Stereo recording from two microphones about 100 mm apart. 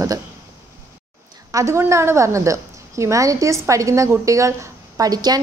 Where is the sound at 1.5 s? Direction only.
30° right (ahead or behind).